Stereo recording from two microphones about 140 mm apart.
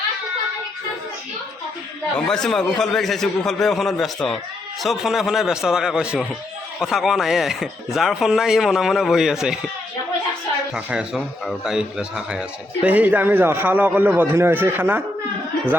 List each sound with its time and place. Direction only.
2.1 s speech: 5° left (ahead or behind)
10.8 s a man's voice: 5° right (ahead or behind)